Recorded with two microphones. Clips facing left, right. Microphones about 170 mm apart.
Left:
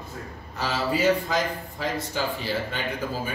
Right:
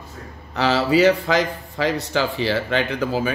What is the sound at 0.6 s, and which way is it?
Speech, 80° right.